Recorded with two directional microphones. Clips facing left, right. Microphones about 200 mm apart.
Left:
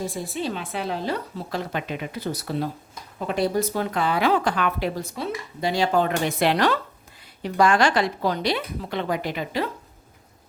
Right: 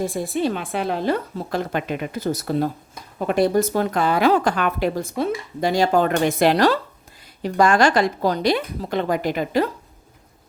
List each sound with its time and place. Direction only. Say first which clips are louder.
0.0 s a woman's voice: right 6 dB; 55° right (ahead or behind)